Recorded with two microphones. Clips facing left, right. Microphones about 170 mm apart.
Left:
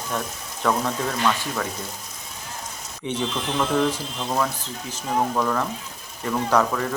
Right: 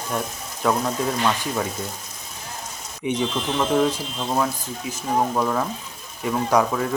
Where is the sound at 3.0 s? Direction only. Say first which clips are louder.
Right 3 dB; 15° right (ahead or behind).